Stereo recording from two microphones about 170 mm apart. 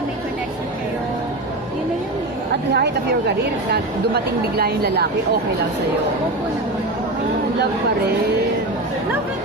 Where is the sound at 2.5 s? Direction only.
80° right.